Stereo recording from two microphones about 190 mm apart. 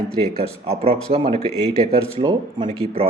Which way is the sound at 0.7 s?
35° right (ahead or behind).